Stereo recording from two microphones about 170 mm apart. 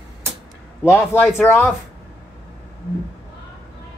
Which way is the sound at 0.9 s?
15° left (ahead or behind).